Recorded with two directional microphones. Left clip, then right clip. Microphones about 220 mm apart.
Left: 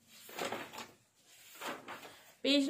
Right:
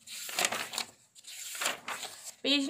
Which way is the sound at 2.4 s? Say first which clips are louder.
Right 2 dB; 20° right (ahead or behind).